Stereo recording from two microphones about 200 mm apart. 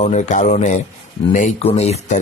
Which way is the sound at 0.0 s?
35° left (ahead or behind).